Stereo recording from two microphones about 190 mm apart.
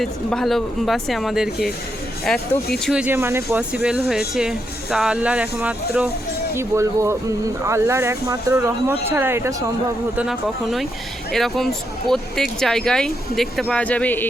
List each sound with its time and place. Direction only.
0.0 s speech: centre (ahead or behind); by 9.6 s 15° right (ahead or behind)
10.2 s speech: centre (ahead or behind)